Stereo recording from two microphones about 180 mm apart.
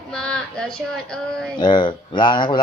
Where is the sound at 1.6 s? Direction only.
25° left (ahead or behind).